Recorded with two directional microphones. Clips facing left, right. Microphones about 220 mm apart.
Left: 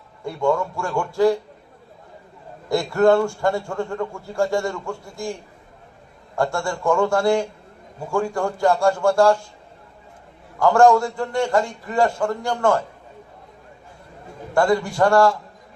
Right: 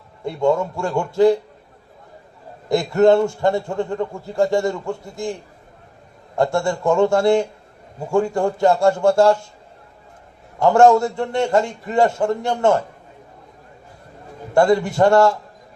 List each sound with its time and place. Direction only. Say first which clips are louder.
0.3 s a man's voice: right 3 dB; 20° right (ahead or behind)
2.6 s a man's voice: right 2 dB; 20° right (ahead or behind)
6.3 s a man's voice: right 4 dB; 20° right (ahead or behind)
10.6 s a man's voice: right 2 dB; 25° right (ahead or behind)
14.5 s a man's voice: right 3 dB; 25° right (ahead or behind)